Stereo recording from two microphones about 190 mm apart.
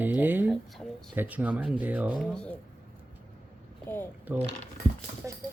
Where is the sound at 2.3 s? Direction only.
5° left (ahead or behind).